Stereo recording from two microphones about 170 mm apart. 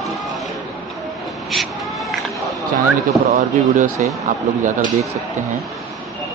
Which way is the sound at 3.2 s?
45° right (ahead or behind).